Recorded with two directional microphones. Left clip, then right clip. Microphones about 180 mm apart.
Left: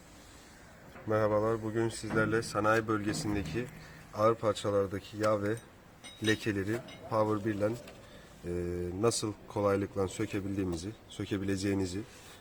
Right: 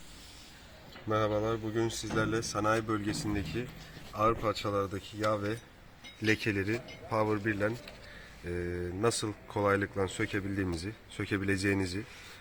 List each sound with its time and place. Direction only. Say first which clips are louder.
1.0 s speech: left 1 dB; 5° left (ahead or behind); by 3.6 s 10° right (ahead or behind)
4.1 s speech: left 1 dB; 10° left (ahead or behind)
6.2 s speech: right 1 dB; 10° right (ahead or behind)
7.4 s speech: right 1 dB; centre (ahead or behind)
8.4 s speech: even; 15° left (ahead or behind)
10.6 s speech: even; 10° right (ahead or behind)